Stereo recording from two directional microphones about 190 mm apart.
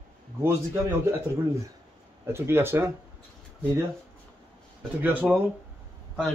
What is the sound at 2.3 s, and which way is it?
Speech, 15° right (ahead or behind).